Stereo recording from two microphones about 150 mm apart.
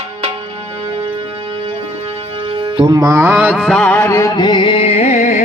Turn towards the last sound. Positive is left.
turn(degrees=50)  # may be behind; listen again after turning